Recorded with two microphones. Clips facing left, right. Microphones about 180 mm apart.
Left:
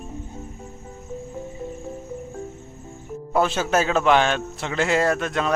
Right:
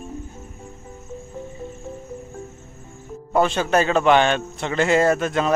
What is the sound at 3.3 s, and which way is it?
A man's voice, 5° left (ahead or behind).